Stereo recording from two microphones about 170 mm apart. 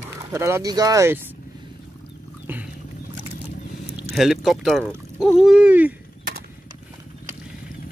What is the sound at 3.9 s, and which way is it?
Speech, 5° right (ahead or behind).